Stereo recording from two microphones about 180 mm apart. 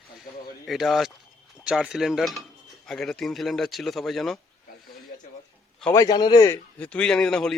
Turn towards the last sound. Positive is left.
turn(degrees=5)  # may be behind; listen again after turning